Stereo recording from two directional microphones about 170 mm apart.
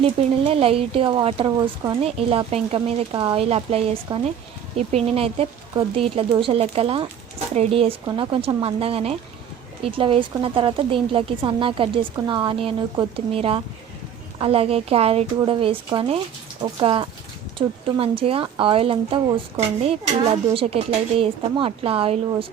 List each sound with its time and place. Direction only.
0.0 s speech: 35° right (ahead or behind)